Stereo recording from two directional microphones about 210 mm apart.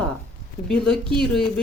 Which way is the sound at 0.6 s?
5° left (ahead or behind).